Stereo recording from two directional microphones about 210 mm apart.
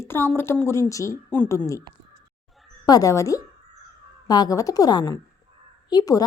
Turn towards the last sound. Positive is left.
turn(degrees=20)  # may be behind; listen again after turning